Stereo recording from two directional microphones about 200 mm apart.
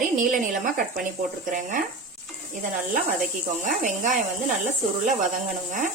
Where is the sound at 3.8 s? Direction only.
40° right (ahead or behind).